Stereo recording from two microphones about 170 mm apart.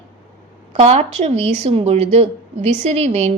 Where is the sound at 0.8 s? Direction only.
40° right (ahead or behind).